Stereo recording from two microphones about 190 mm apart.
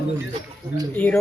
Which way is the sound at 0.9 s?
10° left (ahead or behind).